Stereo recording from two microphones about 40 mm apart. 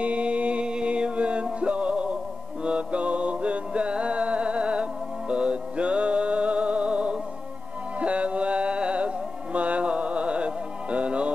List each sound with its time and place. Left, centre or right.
0.0 s music: right